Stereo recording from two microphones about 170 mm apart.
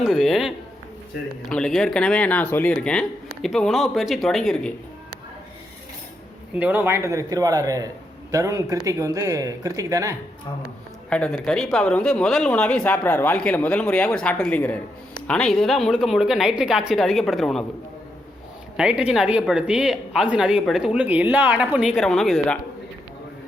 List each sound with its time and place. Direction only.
0.0 s speech: centre (ahead or behind)
6.6 s speech: 10° right (ahead or behind)
11.1 s speech: 5° left (ahead or behind)
18.8 s speech: 5° right (ahead or behind)